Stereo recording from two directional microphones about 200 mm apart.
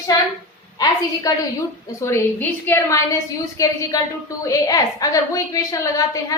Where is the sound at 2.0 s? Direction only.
15° left (ahead or behind).